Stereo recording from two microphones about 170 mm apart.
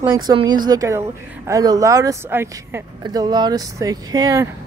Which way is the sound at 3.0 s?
25° right (ahead or behind).